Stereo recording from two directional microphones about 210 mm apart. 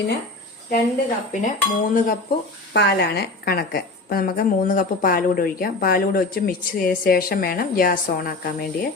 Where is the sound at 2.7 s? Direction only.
55° left (ahead or behind).